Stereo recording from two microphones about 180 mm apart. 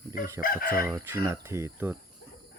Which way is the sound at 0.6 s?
55° left (ahead or behind).